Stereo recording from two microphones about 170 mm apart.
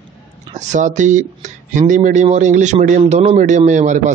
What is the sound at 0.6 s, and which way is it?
Speech, 45° right (ahead or behind).